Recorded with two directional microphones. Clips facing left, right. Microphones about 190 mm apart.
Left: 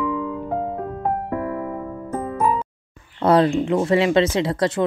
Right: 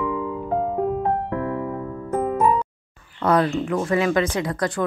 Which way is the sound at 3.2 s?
30° left (ahead or behind).